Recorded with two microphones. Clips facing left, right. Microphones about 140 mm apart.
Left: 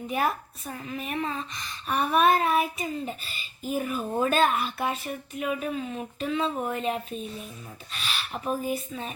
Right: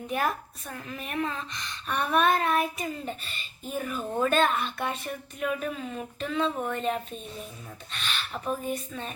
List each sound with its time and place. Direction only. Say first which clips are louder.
0.1 s a woman's voice: left 1 dB; centre (ahead or behind)